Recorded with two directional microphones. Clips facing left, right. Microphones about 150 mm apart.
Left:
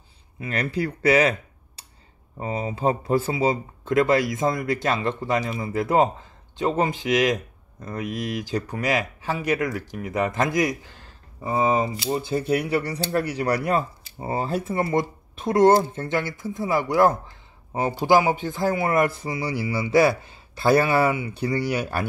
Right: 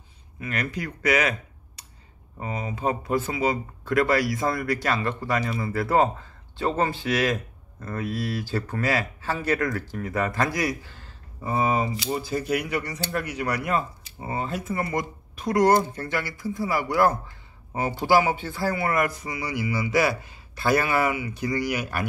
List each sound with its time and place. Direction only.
0.4 s speech: 30° left (ahead or behind)
1.8 s a sound: 30° left (ahead or behind)
2.3 s speech: 30° left (ahead or behind)
11.8 s speech: 35° left (ahead or behind)